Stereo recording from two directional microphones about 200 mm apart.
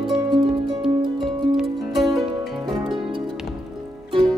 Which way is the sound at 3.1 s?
25° right (ahead or behind).